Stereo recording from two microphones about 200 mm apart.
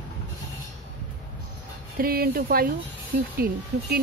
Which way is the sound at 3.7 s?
50° right (ahead or behind).